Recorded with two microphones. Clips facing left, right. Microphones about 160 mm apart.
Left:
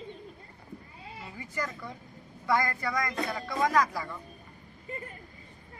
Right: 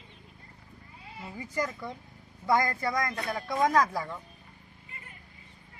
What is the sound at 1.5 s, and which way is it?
A man's voice, 15° right (ahead or behind).